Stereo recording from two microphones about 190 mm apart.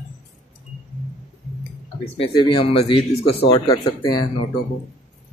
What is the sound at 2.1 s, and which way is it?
Speech, 25° left (ahead or behind).